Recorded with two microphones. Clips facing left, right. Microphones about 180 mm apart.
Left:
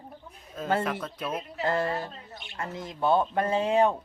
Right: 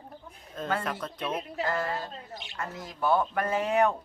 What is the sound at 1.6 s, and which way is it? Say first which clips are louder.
Speech: left 5 dB; 25° left (ahead or behind).